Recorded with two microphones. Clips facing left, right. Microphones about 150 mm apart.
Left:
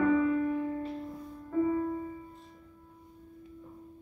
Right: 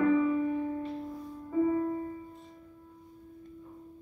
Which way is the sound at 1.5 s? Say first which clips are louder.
Right 1 dB; 10° right (ahead or behind).